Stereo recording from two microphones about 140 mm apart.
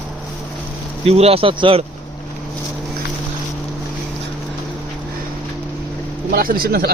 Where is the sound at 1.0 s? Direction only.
45° right (ahead or behind).